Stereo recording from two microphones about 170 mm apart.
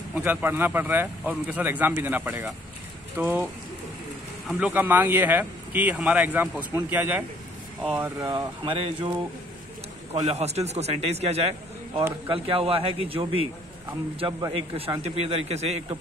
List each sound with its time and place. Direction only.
0.1 s speech: 10° right (ahead or behind)
4.5 s a man's voice: 5° right (ahead or behind); by 8.5 s 20° right (ahead or behind)
8.6 s speech: 35° right (ahead or behind)
10.1 s a man's voice: 40° right (ahead or behind)
15.0 s speech: 40° right (ahead or behind)